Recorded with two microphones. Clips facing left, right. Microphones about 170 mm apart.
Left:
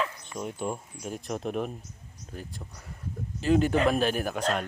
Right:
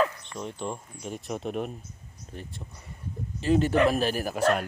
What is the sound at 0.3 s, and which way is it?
Speech, 5° left (ahead or behind).